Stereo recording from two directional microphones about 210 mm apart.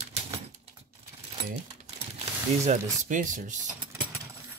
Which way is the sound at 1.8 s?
30° right (ahead or behind).